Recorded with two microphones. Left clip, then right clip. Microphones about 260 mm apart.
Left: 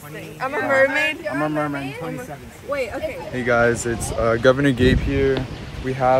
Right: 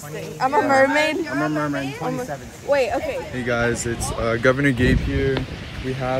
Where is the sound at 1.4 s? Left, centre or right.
Left.